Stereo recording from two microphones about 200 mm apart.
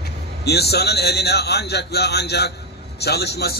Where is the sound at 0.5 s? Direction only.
55° left (ahead or behind).